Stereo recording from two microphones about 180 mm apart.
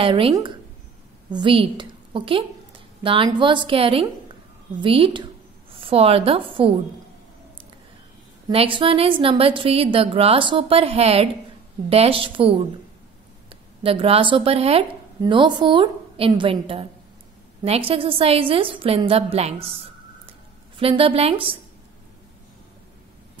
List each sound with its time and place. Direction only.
0.0 s a woman's voice: 30° right (ahead or behind)
8.5 s a woman's voice: 30° right (ahead or behind)
13.8 s a woman's voice: 30° right (ahead or behind)